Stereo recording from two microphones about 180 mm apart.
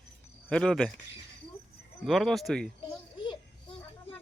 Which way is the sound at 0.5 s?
5° left (ahead or behind).